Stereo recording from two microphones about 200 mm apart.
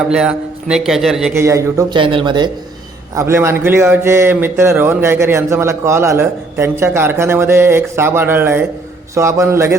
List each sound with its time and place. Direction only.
0.1 s a man's voice: 5° right (ahead or behind)
1.3 s speech: 15° right (ahead or behind)